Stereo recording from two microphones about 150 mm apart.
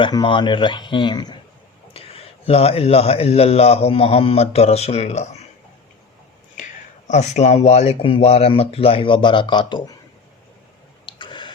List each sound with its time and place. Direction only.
0.0 s speech: 30° left (ahead or behind)
1.9 s a sound: 40° left (ahead or behind)
2.5 s a man's voice: 40° left (ahead or behind)
7.1 s speech: 50° left (ahead or behind); by 9.9 s 30° left (ahead or behind)
11.0 s tick-tock: 30° left (ahead or behind)